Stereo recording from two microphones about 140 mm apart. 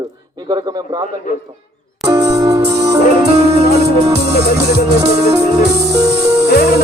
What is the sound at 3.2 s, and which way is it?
Music, 45° right (ahead or behind).